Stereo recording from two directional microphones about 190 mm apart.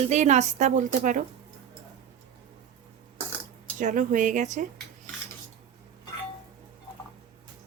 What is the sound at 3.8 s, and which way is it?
Speech, 45° right (ahead or behind).